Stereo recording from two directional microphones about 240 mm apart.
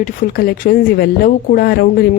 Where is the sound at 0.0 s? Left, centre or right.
Left.